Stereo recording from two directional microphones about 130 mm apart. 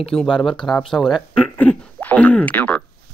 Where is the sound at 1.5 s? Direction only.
10° left (ahead or behind).